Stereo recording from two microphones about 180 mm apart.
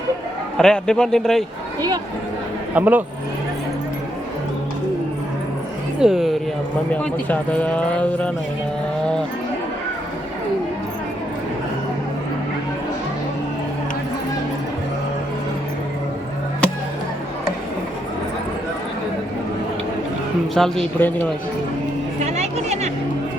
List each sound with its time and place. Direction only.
0.5 s a man's voice: 5° left (ahead or behind)
2.7 s speech: 10° right (ahead or behind)
6.0 s a man's voice: centre (ahead or behind)
20.6 s a man's voice: centre (ahead or behind)
22.2 s music: 35° right (ahead or behind)